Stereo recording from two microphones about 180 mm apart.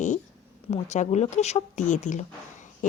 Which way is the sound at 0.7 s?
40° left (ahead or behind).